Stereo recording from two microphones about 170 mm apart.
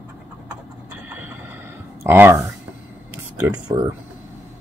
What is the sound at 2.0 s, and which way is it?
Speech, 15° right (ahead or behind).